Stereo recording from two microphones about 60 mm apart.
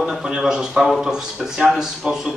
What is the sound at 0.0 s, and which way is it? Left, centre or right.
A man's voice, centre.